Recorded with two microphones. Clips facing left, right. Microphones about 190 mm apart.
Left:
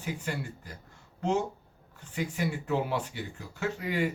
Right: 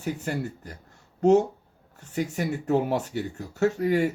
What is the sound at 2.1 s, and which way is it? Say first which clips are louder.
Speech: right 4 dB; 45° right (ahead or behind).